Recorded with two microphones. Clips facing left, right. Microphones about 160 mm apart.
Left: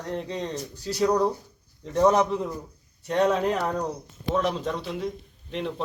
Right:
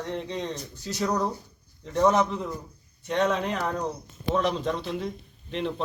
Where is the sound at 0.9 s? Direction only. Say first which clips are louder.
Left 5 dB; 10° left (ahead or behind).